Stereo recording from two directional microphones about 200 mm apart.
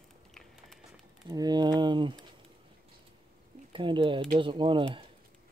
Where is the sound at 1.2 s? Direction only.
20° right (ahead or behind).